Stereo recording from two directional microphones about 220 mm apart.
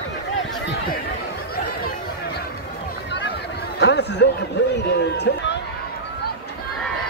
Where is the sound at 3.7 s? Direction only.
50° left (ahead or behind).